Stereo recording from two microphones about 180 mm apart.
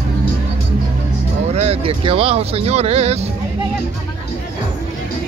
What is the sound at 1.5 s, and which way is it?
Speech, 35° right (ahead or behind).